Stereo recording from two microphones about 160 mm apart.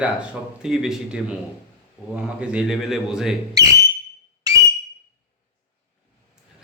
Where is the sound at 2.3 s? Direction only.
5° right (ahead or behind).